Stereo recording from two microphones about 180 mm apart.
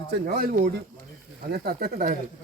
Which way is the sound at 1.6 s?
50° right (ahead or behind).